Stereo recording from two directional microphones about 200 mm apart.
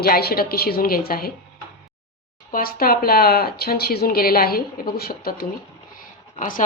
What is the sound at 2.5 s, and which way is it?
Speech, 45° left (ahead or behind).